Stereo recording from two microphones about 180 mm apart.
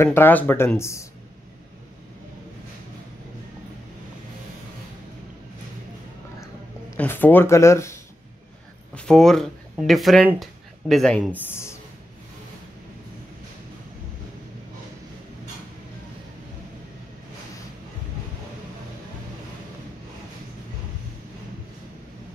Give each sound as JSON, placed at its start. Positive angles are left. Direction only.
{"t": 0.0, "sound": "speech", "side_deg": 10}
{"t": 6.4, "sound": "a sound", "side_deg": 15}
{"t": 8.9, "sound": "speech", "side_deg": 5}